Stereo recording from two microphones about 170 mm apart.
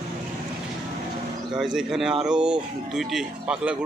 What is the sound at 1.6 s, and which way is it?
Speech, centre (ahead or behind).